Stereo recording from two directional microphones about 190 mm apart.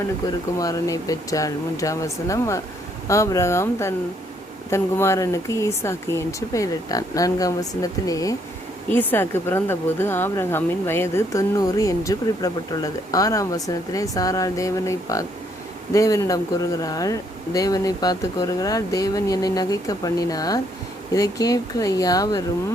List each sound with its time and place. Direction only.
0.6 s speech: 20° left (ahead or behind)